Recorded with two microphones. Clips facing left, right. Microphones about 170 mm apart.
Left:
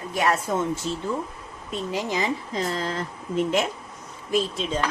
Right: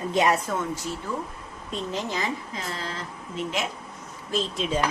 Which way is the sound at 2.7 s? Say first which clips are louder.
Left 6 dB; 45° left (ahead or behind).